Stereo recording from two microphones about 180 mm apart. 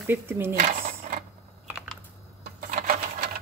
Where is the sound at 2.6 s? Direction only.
50° right (ahead or behind).